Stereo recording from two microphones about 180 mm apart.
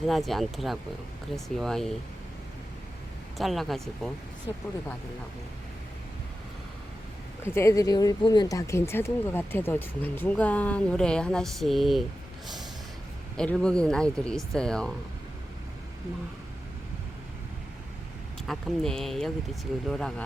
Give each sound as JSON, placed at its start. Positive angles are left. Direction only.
{"t": 0.0, "sound": "speech", "side_deg": 0}
{"t": 3.3, "sound": "speech", "side_deg": 0}
{"t": 4.5, "sound": "speech", "side_deg": 25}
{"t": 7.4, "sound": "speech", "side_deg": 15}
{"t": 13.3, "sound": "speech", "side_deg": 5}
{"t": 18.4, "sound": "speech", "side_deg": 0}